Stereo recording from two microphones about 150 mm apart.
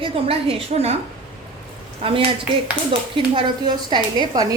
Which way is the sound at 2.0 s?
35° right (ahead or behind).